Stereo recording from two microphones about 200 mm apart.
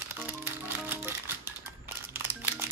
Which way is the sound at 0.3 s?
10° right (ahead or behind).